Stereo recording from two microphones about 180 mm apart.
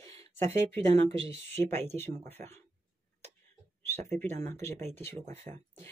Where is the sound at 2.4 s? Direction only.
50° right (ahead or behind).